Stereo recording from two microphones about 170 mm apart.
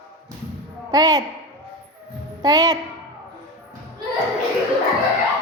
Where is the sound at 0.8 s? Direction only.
25° right (ahead or behind).